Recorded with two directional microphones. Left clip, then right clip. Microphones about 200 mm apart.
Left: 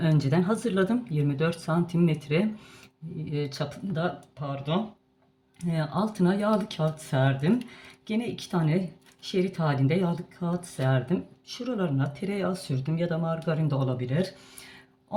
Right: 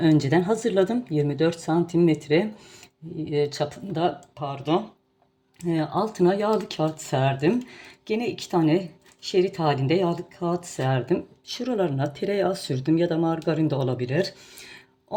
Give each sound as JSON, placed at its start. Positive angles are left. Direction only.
{"t": 0.0, "sound": "speech", "side_deg": -25}
{"t": 3.5, "sound": "speech", "side_deg": -30}